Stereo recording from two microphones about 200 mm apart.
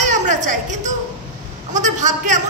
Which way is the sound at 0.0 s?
40° right (ahead or behind).